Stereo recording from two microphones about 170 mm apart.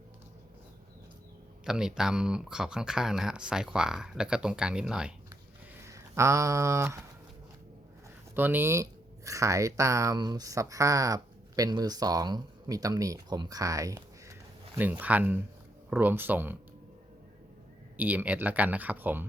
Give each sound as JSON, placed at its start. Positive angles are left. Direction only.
{"t": 1.6, "sound": "speech", "side_deg": -5}
{"t": 5.7, "sound": "speech", "side_deg": -15}
{"t": 8.4, "sound": "speech", "side_deg": -10}
{"t": 17.9, "sound": "speech", "side_deg": -10}